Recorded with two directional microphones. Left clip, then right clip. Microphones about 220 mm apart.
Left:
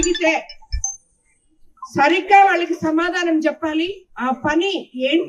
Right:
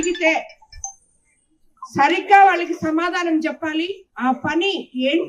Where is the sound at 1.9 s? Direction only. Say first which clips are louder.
Even; centre (ahead or behind).